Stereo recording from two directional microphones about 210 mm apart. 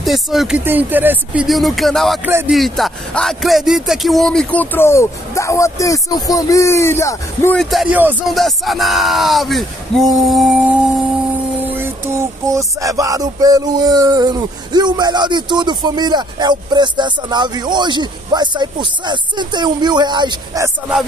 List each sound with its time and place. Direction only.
0.0 s speech: centre (ahead or behind)
7.5 s speech: 5° right (ahead or behind)
11.7 s music: 10° right (ahead or behind)